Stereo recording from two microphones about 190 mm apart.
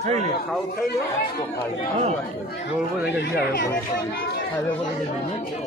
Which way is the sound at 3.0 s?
55° left (ahead or behind).